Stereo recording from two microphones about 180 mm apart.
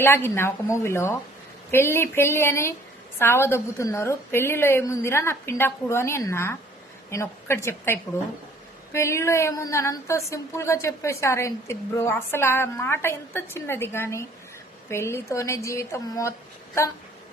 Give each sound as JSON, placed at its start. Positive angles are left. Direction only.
{"t": 0.0, "sound": "a woman's voice", "side_deg": 15}